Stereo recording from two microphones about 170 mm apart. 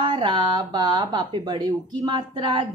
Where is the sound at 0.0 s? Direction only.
30° right (ahead or behind).